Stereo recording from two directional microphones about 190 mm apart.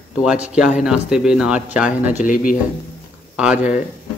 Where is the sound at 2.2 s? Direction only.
45° left (ahead or behind).